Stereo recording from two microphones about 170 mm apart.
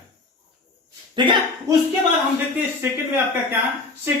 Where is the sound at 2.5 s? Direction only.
10° right (ahead or behind).